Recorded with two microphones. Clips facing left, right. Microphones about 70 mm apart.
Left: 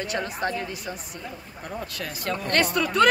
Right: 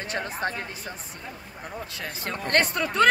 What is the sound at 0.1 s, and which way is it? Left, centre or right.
Speech, right.